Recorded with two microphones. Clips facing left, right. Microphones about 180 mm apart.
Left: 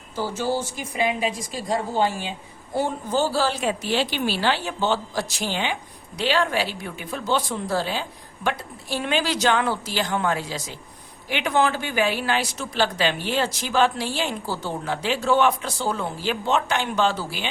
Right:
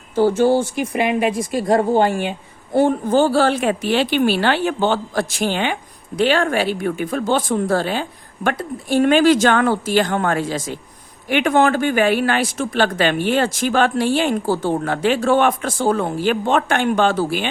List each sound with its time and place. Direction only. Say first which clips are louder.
0.2 s speech: right 11 dB; 60° right (ahead or behind)